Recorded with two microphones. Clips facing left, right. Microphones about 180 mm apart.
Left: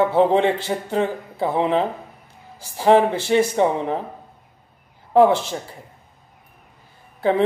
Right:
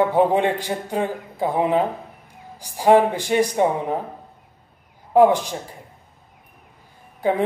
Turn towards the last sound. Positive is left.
turn(degrees=-15)  # may be behind; listen again after turning